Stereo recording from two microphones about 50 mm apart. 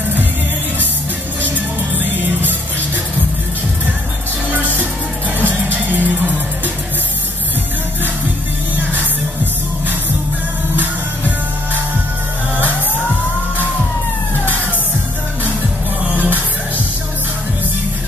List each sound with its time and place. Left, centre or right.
4.5 s music: right
16.0 s music: right